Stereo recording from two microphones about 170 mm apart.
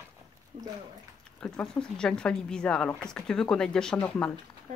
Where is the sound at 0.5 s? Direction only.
40° right (ahead or behind).